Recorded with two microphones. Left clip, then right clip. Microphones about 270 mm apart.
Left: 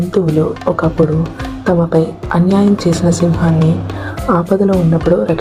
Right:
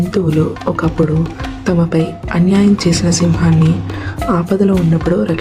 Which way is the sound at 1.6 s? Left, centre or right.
Right.